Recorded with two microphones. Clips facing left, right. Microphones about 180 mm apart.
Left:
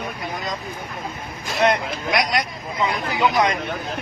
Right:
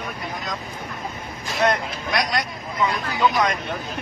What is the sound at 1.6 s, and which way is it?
Speech, 20° left (ahead or behind).